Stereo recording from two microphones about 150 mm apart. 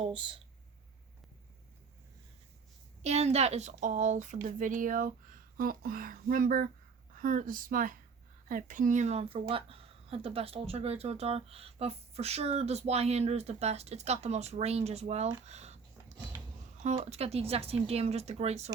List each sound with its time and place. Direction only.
0.0 s speech: 35° right (ahead or behind)
3.0 s speech: 45° right (ahead or behind)
15.4 s a sound: 45° right (ahead or behind)
16.8 s speech: 45° right (ahead or behind)